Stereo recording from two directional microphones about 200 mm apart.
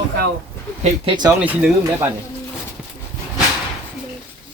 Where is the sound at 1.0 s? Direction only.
20° right (ahead or behind).